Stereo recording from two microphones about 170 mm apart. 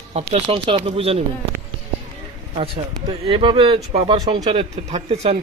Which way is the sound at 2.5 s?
30° right (ahead or behind).